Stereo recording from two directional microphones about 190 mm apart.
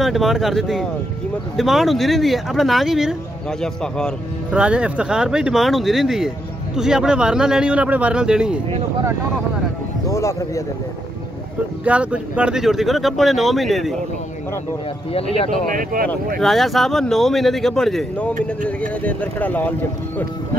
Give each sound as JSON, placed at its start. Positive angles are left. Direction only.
{"t": 0.0, "sound": "speech", "side_deg": 0}
{"t": 10.0, "sound": "speech", "side_deg": 15}
{"t": 11.8, "sound": "speech", "side_deg": -5}
{"t": 15.1, "sound": "speech", "side_deg": 30}
{"t": 15.7, "sound": "speech", "side_deg": -45}
{"t": 16.3, "sound": "speech", "side_deg": 0}